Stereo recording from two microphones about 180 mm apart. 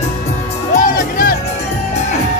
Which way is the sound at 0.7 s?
50° left (ahead or behind).